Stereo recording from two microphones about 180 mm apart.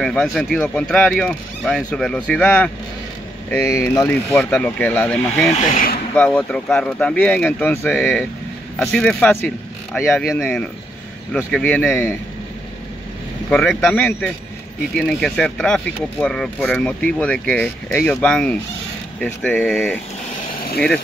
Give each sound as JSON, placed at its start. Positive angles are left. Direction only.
{"t": 0.0, "sound": "speech", "side_deg": 5}
{"t": 5.5, "sound": "speech", "side_deg": 40}
{"t": 6.1, "sound": "speech", "side_deg": 5}
{"t": 13.5, "sound": "speech", "side_deg": 5}